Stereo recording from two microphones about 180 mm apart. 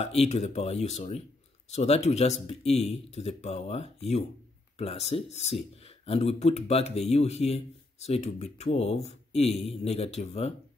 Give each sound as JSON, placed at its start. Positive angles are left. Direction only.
{"t": 0.0, "sound": "speech", "side_deg": 35}